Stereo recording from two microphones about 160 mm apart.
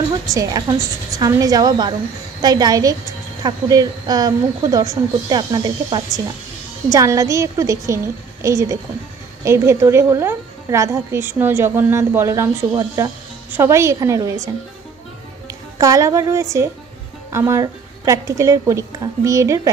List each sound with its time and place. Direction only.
0.3 s a woman's voice: 25° right (ahead or behind)